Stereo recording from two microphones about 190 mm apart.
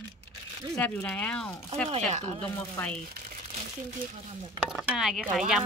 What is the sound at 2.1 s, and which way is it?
Speech, 35° right (ahead or behind).